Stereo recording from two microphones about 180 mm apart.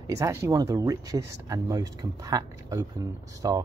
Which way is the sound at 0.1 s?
15° right (ahead or behind).